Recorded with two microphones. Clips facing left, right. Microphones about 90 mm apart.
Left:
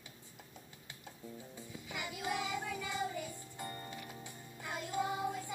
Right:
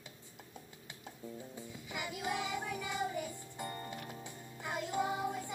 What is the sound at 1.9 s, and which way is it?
Music, 20° right (ahead or behind).